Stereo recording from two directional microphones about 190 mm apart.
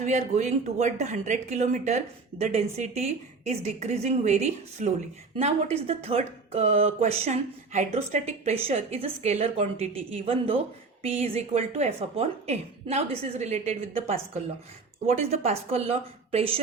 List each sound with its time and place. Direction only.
0.0 s speech: 40° right (ahead or behind)